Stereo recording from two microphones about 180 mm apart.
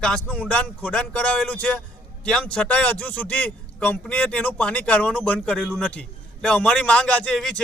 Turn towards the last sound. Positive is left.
turn(degrees=5)  # may be behind; listen again after turning